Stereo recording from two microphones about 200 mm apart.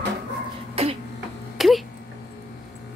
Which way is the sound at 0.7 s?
30° right (ahead or behind).